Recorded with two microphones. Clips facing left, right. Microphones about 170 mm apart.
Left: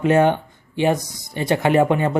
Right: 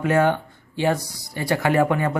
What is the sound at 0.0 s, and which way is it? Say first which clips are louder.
Speech: left 3 dB; 20° left (ahead or behind).